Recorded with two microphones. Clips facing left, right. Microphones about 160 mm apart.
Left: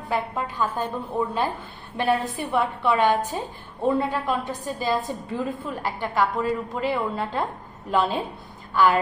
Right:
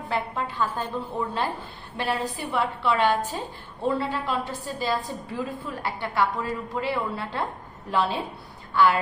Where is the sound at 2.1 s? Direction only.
25° left (ahead or behind).